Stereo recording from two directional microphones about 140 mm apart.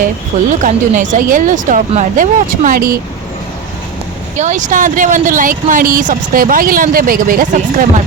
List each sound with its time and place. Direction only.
0.6 s speech: 65° right (ahead or behind); by 3.0 s 90° right
4.4 s speech: 60° right (ahead or behind)